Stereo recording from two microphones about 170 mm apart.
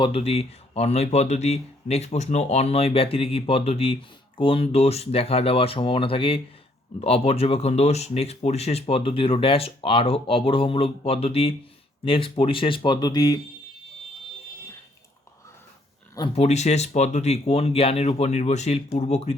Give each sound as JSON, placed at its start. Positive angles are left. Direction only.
{"t": 0.0, "sound": "speech", "side_deg": 35}
{"t": 16.3, "sound": "speech", "side_deg": 40}